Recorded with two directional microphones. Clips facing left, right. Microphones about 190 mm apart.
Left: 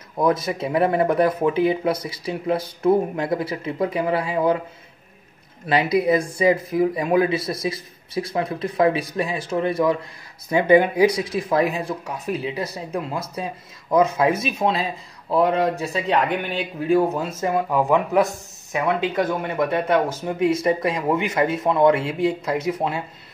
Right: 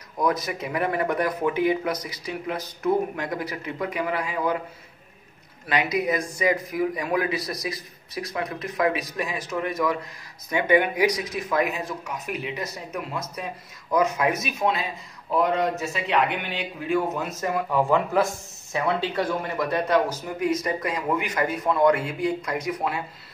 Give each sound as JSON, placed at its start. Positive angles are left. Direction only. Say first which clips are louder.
{"t": 0.2, "sound": "speech", "louder": "left 5 dB", "side_deg": 30}
{"t": 5.7, "sound": "speech", "louder": "left 6 dB", "side_deg": 30}
{"t": 17.7, "sound": "speech", "louder": "left 2 dB", "side_deg": 15}